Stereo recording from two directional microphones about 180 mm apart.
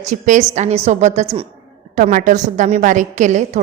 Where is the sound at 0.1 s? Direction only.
40° right (ahead or behind).